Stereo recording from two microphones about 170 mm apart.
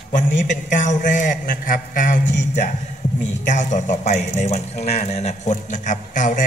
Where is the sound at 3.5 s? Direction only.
45° left (ahead or behind).